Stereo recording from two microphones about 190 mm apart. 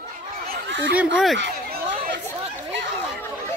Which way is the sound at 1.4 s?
50° right (ahead or behind).